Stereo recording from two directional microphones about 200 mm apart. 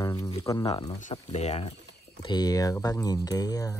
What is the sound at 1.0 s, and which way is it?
Speech, 35° left (ahead or behind).